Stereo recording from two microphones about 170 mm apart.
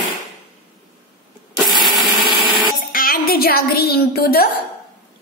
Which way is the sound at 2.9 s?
55° left (ahead or behind).